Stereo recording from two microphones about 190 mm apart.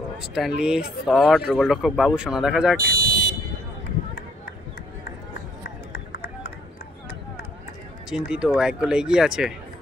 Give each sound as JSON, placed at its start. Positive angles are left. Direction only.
{"t": 0.2, "sound": "speech", "side_deg": 0}
{"t": 2.8, "sound": "fire alarm", "side_deg": -55}
{"t": 5.9, "sound": "run", "side_deg": 55}
{"t": 8.3, "sound": "speech", "side_deg": -5}